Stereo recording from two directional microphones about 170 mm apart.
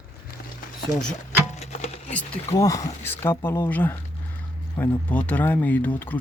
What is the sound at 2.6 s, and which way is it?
Speech, 20° left (ahead or behind).